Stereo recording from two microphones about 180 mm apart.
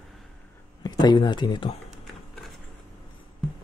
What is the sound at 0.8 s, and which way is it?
Speech, 25° left (ahead or behind).